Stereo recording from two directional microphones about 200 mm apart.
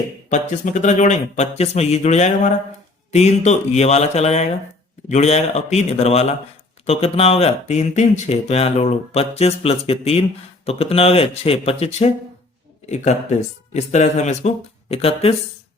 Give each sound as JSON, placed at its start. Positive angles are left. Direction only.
{"t": 0.3, "sound": "speech", "side_deg": 35}